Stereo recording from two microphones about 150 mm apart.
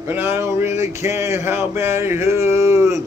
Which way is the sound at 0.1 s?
15° right (ahead or behind).